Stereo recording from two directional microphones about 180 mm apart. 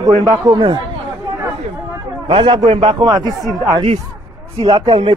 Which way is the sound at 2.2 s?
30° right (ahead or behind).